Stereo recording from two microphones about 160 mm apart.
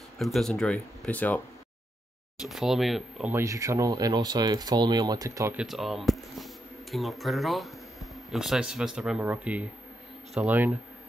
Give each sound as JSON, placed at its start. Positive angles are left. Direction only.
{"t": 0.2, "sound": "speech", "side_deg": 0}
{"t": 2.4, "sound": "speech", "side_deg": 0}
{"t": 3.3, "sound": "speech", "side_deg": -20}
{"t": 5.6, "sound": "speech", "side_deg": 0}